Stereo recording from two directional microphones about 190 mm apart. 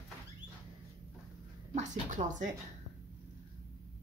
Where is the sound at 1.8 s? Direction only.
40° right (ahead or behind).